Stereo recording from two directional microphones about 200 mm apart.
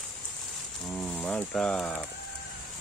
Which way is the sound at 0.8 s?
Centre (ahead or behind).